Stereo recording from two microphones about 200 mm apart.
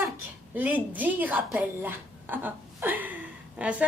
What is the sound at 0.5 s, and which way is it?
A woman's voice, 10° right (ahead or behind).